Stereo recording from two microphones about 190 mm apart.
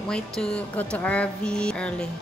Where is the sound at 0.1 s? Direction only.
5° left (ahead or behind).